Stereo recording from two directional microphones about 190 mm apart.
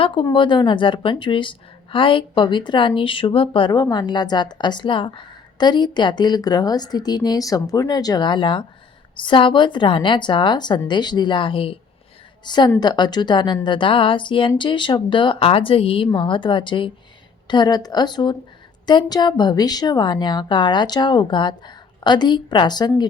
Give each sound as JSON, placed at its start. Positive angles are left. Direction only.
{"t": 0.0, "sound": "a woman's voice", "side_deg": 25}